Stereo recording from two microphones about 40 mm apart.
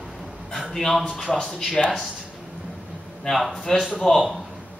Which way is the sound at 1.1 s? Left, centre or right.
Centre.